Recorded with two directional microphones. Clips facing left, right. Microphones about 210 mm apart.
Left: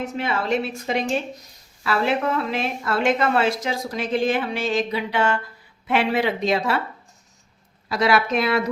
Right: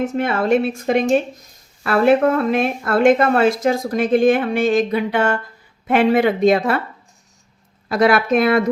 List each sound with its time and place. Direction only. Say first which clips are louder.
0.0 s speech: right 6 dB; 50° right (ahead or behind)
7.9 s speech: right 5 dB; 55° right (ahead or behind)